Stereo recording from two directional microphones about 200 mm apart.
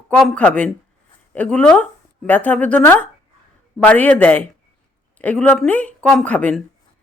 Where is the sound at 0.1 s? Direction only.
5° left (ahead or behind).